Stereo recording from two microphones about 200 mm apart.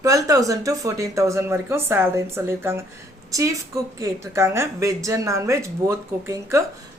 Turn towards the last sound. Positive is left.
turn(degrees=-15)  # may be behind; listen again after turning